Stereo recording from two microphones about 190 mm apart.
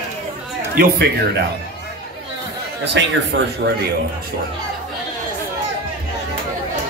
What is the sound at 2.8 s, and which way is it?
Speech, 70° right (ahead or behind).